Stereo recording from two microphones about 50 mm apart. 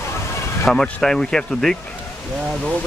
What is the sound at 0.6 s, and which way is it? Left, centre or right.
Speech, centre.